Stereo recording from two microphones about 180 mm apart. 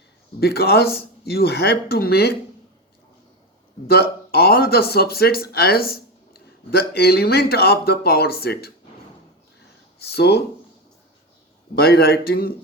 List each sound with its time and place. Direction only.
0.3 s speech: 60° left (ahead or behind)
3.8 s speech: 60° left (ahead or behind)
10.1 s speech: 60° left (ahead or behind)
11.7 s speech: 60° left (ahead or behind)